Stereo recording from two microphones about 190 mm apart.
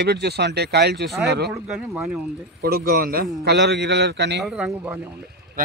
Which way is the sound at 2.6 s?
55° right (ahead or behind).